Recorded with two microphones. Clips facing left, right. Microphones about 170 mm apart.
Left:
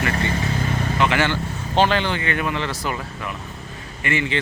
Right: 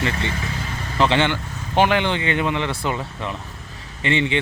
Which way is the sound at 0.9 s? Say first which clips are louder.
Right 3 dB; 30° right (ahead or behind).